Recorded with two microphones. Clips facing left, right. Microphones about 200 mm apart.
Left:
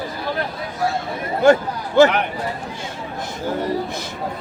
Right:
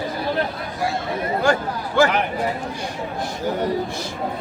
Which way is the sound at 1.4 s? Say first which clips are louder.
Left 9 dB; 20° left (ahead or behind).